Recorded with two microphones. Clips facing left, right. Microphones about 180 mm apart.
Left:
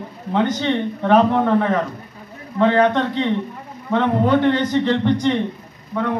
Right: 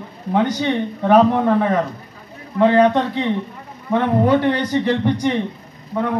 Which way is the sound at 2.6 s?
15° right (ahead or behind).